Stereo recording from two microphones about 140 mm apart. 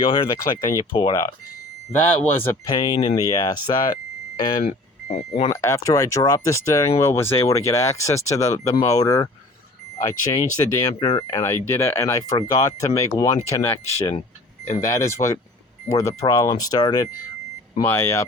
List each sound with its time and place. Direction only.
0.0 s speech: 40° left (ahead or behind)
2.6 s speech: 30° left (ahead or behind)
4.6 s reversing beeps: 60° left (ahead or behind)
5.3 s speech: 30° left (ahead or behind)